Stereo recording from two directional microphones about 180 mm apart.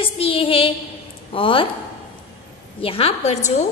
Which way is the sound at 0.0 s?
30° left (ahead or behind).